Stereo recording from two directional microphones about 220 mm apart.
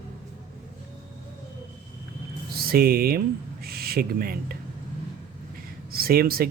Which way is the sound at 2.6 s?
45° right (ahead or behind).